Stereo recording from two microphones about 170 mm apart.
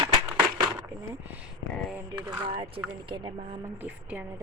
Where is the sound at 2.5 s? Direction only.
30° right (ahead or behind).